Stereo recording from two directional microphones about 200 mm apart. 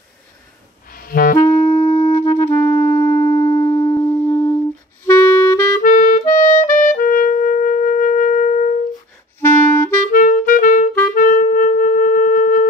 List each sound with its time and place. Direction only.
0.8 s clarinet: 45° left (ahead or behind)
1.4 s music: 10° left (ahead or behind)
5.0 s clarinet: 10° left (ahead or behind)
5.8 s music: 40° left (ahead or behind)
9.4 s clarinet: 10° left (ahead or behind)
10.1 s clarinet: 40° left (ahead or behind)
11.1 s music: 40° left (ahead or behind)